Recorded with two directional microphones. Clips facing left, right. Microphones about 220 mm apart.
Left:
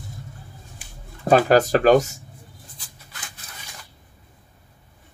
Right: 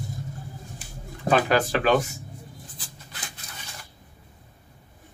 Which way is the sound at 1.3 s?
40° left (ahead or behind).